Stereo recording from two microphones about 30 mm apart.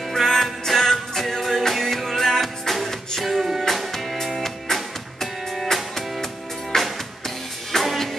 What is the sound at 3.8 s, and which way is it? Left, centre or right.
Music, centre.